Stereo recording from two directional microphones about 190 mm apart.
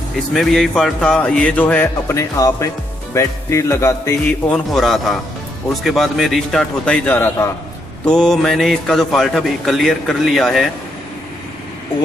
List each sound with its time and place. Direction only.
0.3 s speech: centre (ahead or behind)
4.3 s a man's voice: 5° left (ahead or behind)